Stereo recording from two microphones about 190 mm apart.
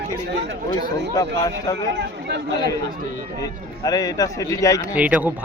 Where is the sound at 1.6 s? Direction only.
20° left (ahead or behind).